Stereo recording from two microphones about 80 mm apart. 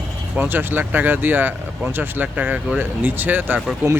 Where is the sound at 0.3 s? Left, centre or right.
Right.